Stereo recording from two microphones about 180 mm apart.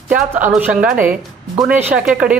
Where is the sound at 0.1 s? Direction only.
10° right (ahead or behind).